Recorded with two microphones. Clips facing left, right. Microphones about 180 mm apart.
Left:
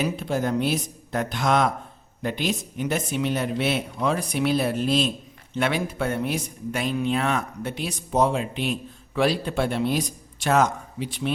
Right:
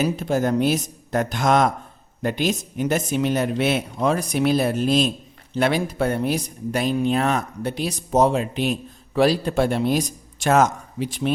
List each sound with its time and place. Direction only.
0.0 s speech: 45° right (ahead or behind)